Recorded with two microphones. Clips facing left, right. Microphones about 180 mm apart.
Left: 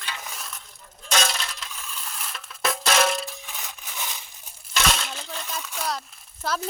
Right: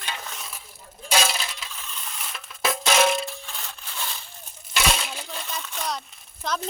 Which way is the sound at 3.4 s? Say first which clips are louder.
Even; 15° left (ahead or behind).